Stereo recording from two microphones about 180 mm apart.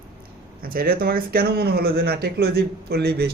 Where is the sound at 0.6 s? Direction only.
55° right (ahead or behind).